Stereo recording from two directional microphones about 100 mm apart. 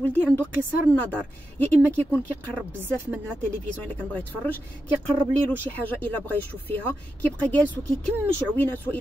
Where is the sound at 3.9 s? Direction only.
15° left (ahead or behind).